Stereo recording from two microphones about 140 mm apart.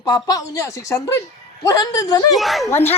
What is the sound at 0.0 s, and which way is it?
A woman's voice, 25° left (ahead or behind).